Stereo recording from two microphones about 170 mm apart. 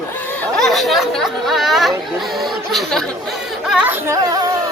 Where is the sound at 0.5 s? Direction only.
Centre (ahead or behind).